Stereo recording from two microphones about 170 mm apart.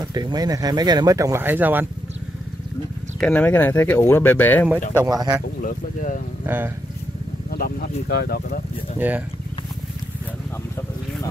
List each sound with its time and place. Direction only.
0.0 s speech: 25° right (ahead or behind)
3.2 s speech: 5° left (ahead or behind)
5.0 s speech: 20° right (ahead or behind)
5.6 s speech: 50° left (ahead or behind)
6.4 s speech: 10° right (ahead or behind)
7.5 s speech: 65° left (ahead or behind)